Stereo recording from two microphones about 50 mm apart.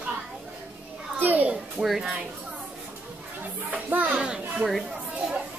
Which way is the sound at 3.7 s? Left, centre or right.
Right.